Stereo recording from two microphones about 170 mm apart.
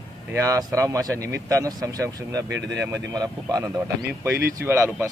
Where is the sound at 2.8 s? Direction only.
20° right (ahead or behind).